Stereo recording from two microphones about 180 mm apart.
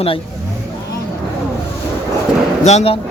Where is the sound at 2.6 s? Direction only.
35° left (ahead or behind).